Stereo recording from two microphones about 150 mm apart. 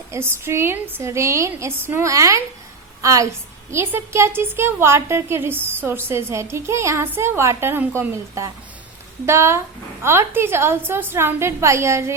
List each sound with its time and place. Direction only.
0.1 s a woman's voice: 15° right (ahead or behind)